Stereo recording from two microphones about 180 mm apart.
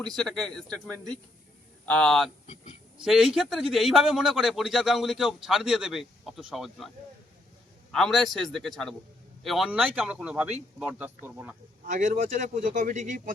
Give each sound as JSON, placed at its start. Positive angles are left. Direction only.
{"t": 0.0, "sound": "a man's voice", "side_deg": 5}
{"t": 1.9, "sound": "a man's voice", "side_deg": 5}
{"t": 7.9, "sound": "a man's voice", "side_deg": 0}
{"t": 11.9, "sound": "speech", "side_deg": -45}